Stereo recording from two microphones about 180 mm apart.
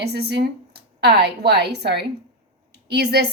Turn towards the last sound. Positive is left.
turn(degrees=-65)  # may be behind; listen again after turning